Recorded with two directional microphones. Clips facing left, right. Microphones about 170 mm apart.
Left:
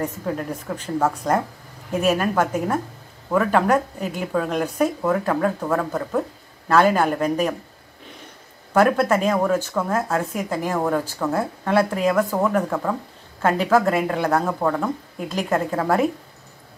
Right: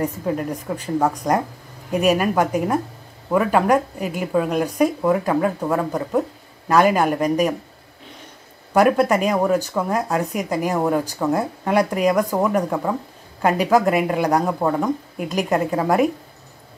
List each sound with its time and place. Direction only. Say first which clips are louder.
0.0 s speech: right 3 dB; 10° right (ahead or behind)
8.7 s speech: right 2 dB; 10° right (ahead or behind)